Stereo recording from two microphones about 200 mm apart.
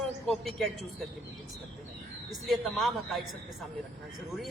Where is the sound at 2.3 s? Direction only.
Centre (ahead or behind).